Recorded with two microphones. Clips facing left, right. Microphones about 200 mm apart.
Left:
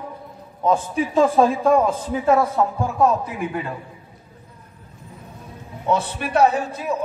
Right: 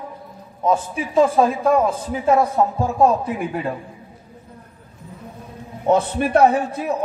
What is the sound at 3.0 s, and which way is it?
Speech, 35° right (ahead or behind).